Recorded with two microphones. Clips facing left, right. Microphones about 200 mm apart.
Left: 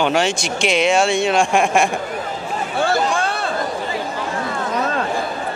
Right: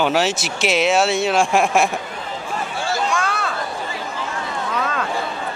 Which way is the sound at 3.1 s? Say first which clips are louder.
Left 1 dB; 30° left (ahead or behind).